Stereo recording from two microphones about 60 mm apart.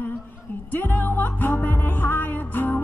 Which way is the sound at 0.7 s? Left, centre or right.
Left.